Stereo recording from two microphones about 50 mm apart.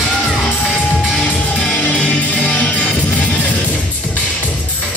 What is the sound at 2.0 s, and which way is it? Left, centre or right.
Music, left.